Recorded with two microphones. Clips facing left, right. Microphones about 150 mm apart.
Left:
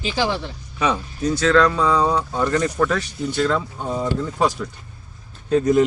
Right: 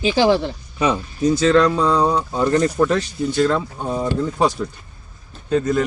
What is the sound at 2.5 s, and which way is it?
Speech, 30° right (ahead or behind).